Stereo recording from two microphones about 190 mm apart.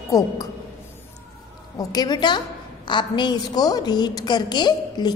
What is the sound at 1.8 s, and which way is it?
A woman's voice, 20° left (ahead or behind).